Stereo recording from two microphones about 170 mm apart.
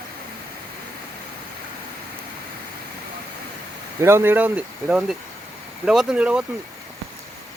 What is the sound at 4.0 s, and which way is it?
Speech, 15° right (ahead or behind).